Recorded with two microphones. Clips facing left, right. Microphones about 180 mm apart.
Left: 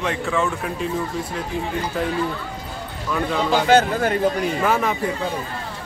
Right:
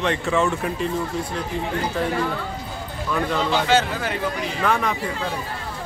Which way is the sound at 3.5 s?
50° left (ahead or behind).